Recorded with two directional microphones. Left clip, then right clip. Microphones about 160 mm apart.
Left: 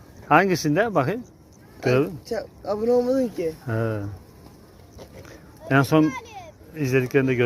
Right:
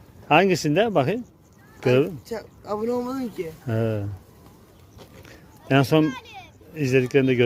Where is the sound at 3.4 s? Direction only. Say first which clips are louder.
Left 1 dB; 55° right (ahead or behind).